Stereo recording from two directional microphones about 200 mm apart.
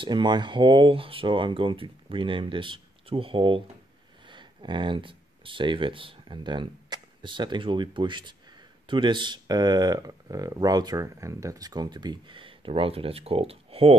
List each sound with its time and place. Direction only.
0.0 s speech: 20° right (ahead or behind)